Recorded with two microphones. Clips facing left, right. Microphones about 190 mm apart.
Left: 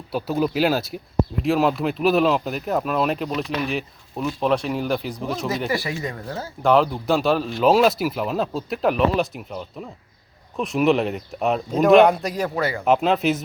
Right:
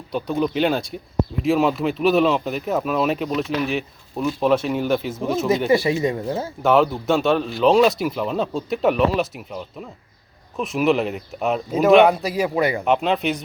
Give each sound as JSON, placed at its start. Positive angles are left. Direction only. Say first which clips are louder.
{"t": 0.1, "sound": "speech", "louder": "even", "side_deg": 5}
{"t": 5.5, "sound": "speech", "louder": "right 8 dB", "side_deg": -25}
{"t": 6.6, "sound": "speech", "louder": "even", "side_deg": -5}
{"t": 12.8, "sound": "speech", "louder": "left 1 dB", "side_deg": 0}